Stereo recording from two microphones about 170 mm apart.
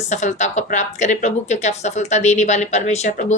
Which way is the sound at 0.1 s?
45° left (ahead or behind).